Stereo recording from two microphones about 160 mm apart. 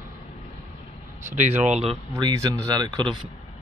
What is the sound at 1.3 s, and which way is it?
Speech, 45° right (ahead or behind).